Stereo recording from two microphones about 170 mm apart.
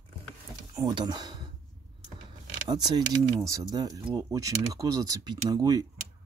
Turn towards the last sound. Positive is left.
turn(degrees=-25)  # may be behind; listen again after turning